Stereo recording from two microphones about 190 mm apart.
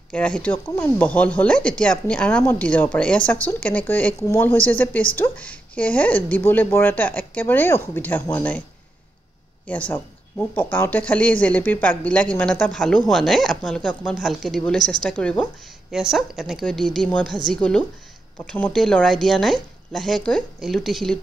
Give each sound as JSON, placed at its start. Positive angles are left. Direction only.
{"t": 0.1, "sound": "speech", "side_deg": 5}
{"t": 9.7, "sound": "a woman's voice", "side_deg": 10}